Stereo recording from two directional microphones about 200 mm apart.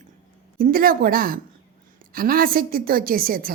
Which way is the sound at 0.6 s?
45° right (ahead or behind).